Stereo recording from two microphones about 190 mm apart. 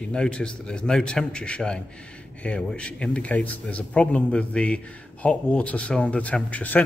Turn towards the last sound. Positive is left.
turn(degrees=10)  # may be behind; listen again after turning